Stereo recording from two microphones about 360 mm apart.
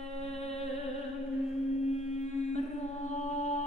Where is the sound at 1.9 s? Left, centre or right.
Centre.